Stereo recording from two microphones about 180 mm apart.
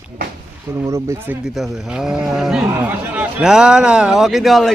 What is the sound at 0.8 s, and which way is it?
Speech, 15° right (ahead or behind).